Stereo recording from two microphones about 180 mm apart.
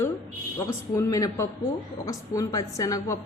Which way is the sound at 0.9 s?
20° left (ahead or behind).